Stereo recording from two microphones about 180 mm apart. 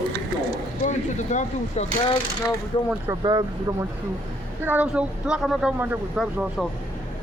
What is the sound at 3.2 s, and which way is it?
Speech, 25° right (ahead or behind).